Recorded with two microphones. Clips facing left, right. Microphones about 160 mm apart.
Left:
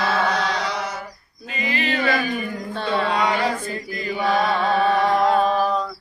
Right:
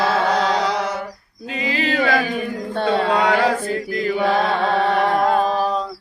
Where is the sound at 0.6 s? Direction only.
90° right.